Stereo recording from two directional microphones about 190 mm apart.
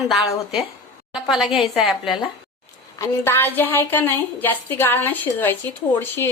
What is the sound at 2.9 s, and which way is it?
A woman's voice, 15° left (ahead or behind).